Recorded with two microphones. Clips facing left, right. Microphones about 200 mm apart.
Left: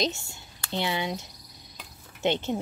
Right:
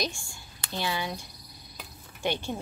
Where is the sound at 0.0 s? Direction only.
20° left (ahead or behind).